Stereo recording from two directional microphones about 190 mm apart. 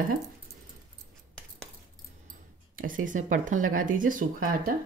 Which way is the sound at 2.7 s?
45° right (ahead or behind).